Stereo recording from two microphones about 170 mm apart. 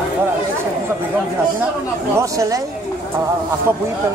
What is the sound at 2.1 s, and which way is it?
Speech, 20° right (ahead or behind).